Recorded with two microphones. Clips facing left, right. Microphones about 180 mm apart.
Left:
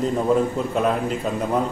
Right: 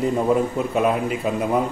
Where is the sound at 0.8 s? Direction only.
5° right (ahead or behind).